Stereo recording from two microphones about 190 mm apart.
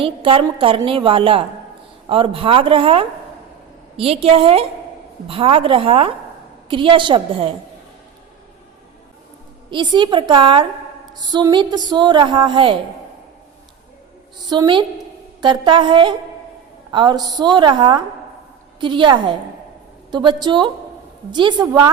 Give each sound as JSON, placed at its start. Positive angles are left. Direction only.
{"t": 0.0, "sound": "a woman's voice", "side_deg": -30}
{"t": 9.6, "sound": "a woman's voice", "side_deg": -25}
{"t": 14.5, "sound": "a woman's voice", "side_deg": -25}